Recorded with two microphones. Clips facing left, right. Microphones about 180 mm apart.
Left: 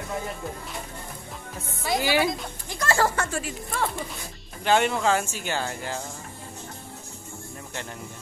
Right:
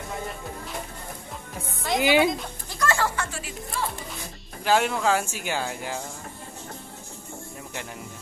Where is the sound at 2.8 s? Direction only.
35° left (ahead or behind).